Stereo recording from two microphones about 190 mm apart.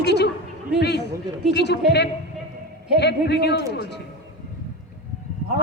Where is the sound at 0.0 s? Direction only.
60° left (ahead or behind).